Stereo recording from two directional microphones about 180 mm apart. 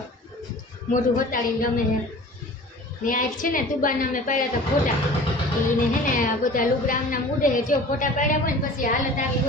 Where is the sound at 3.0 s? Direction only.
50° left (ahead or behind).